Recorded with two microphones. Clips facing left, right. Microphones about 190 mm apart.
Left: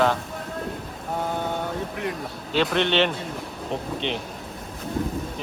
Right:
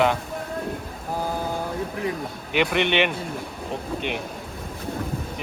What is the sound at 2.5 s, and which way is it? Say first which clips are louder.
Speech: even; 15° right (ahead or behind).